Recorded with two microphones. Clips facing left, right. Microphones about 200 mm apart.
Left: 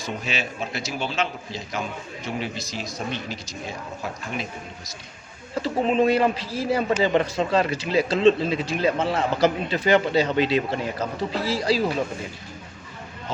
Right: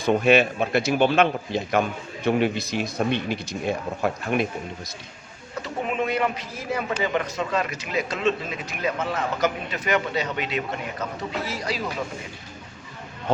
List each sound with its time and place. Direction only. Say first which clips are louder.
0.0 s a man's voice: right 12 dB; 60° right (ahead or behind)
5.5 s speech: left 6 dB; 30° left (ahead or behind)